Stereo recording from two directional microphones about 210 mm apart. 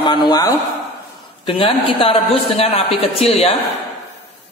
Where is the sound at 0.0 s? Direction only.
20° left (ahead or behind).